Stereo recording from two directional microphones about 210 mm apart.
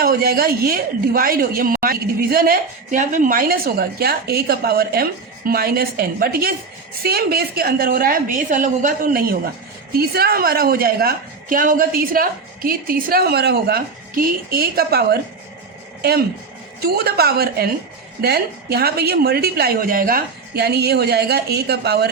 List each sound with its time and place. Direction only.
0.0 s a woman's voice: 45° right (ahead or behind)